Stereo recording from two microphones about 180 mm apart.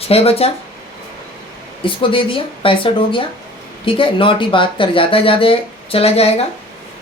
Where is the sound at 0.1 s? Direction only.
35° left (ahead or behind).